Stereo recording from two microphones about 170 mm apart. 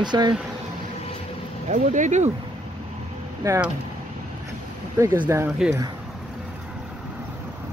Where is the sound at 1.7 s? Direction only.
45° right (ahead or behind).